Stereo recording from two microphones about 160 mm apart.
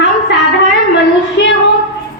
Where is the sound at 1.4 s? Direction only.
90° left.